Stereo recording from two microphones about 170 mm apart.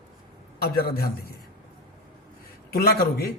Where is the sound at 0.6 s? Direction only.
65° left (ahead or behind).